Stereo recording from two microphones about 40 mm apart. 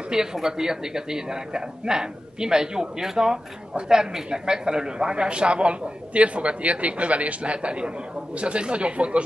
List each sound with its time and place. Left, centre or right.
0.1 s a man's voice: centre